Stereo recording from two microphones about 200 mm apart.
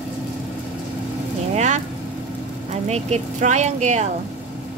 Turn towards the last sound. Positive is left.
turn(degrees=-35)  # may be behind; listen again after turning